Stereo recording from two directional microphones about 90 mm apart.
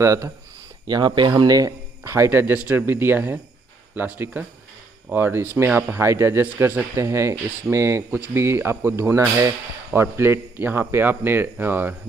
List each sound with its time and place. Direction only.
0.0 s speech: 35° right (ahead or behind)
0.8 s speech: 55° right (ahead or behind); by 11.9 s 25° right (ahead or behind)